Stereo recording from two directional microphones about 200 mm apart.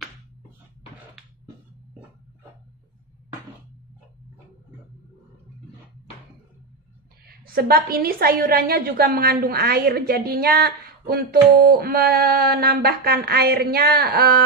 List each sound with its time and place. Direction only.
7.2 s a woman's voice: 50° right (ahead or behind)